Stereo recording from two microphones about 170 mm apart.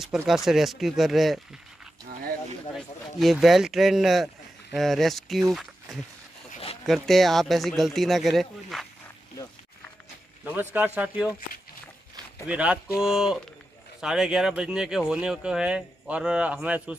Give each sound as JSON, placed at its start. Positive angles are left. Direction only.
{"t": 0.1, "sound": "speech", "side_deg": -5}
{"t": 2.7, "sound": "speech", "side_deg": 0}
{"t": 10.4, "sound": "speech", "side_deg": -10}
{"t": 12.4, "sound": "speech", "side_deg": -5}